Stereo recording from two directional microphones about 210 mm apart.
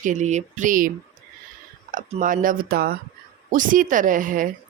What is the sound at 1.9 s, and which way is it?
A woman's voice, 40° right (ahead or behind).